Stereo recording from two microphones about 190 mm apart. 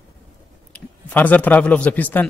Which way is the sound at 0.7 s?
10° left (ahead or behind).